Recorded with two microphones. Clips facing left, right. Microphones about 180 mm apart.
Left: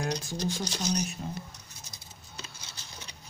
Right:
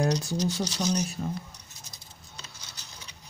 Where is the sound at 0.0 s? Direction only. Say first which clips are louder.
Right 6 dB; 40° right (ahead or behind).